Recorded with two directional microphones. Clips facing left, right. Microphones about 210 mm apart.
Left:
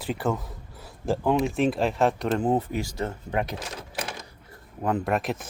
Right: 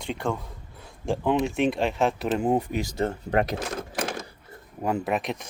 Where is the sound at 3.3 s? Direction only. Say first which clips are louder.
Right 4 dB; 55° right (ahead or behind).